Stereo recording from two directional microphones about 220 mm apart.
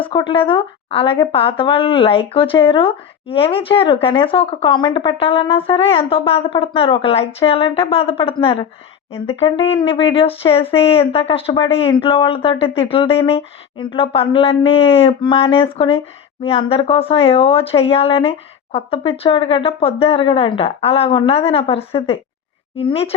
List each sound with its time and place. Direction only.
0.0 s speech: 20° left (ahead or behind)